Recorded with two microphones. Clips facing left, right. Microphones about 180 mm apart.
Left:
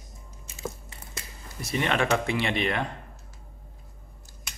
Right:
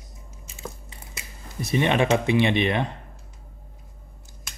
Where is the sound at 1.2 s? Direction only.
20° right (ahead or behind).